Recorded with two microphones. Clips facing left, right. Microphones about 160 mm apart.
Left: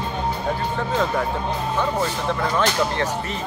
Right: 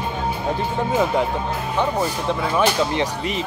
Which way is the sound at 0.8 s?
15° right (ahead or behind).